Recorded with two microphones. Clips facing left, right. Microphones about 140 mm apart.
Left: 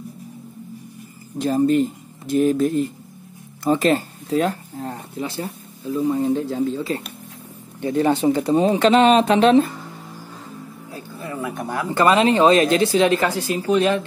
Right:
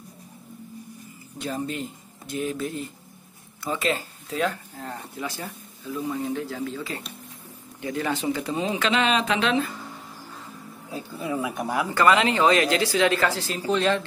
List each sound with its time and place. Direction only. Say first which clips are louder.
1.4 s speech: left 12 dB; 45° left (ahead or behind)
10.9 s speech: right 3 dB; 15° right (ahead or behind)
11.9 s speech: left 5 dB; 25° left (ahead or behind)